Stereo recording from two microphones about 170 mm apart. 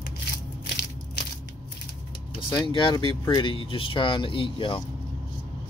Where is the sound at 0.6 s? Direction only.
80° left.